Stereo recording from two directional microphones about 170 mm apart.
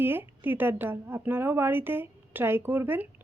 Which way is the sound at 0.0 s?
10° right (ahead or behind).